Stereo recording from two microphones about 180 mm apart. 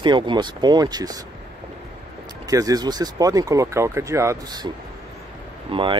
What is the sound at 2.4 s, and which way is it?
Speech, 20° right (ahead or behind).